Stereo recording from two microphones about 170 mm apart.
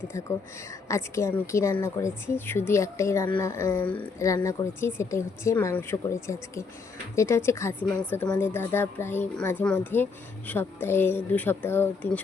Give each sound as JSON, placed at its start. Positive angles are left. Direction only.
{"t": 0.9, "sound": "speech", "side_deg": 15}